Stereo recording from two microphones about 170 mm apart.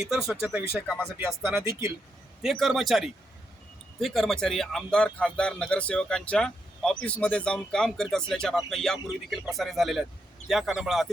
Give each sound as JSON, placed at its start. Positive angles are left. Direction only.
{"t": 0.0, "sound": "speech", "side_deg": -5}
{"t": 2.4, "sound": "speech", "side_deg": 0}